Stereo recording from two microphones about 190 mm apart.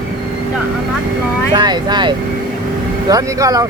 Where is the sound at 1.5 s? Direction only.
20° right (ahead or behind).